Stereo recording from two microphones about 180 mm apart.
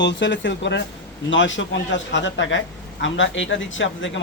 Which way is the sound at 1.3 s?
90° left.